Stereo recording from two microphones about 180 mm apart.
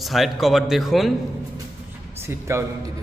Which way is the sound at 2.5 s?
15° right (ahead or behind).